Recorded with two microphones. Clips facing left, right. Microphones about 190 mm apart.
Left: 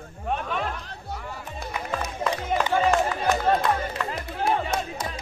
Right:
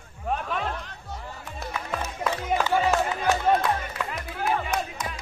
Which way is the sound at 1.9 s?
5° right (ahead or behind).